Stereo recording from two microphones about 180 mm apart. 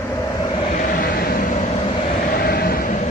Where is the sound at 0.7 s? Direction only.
45° left (ahead or behind).